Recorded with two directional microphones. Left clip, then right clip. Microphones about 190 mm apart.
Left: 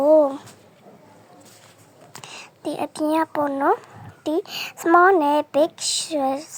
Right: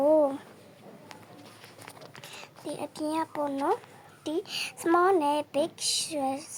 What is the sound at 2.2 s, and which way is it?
Speech, 25° left (ahead or behind).